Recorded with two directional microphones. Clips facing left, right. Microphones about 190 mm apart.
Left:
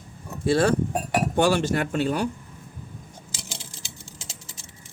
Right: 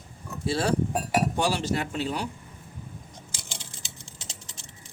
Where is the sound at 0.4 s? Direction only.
55° left (ahead or behind).